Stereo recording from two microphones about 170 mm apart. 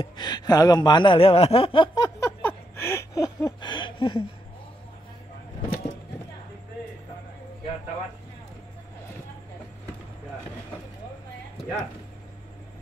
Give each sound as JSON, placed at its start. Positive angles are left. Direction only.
{"t": 0.0, "sound": "speech", "side_deg": 25}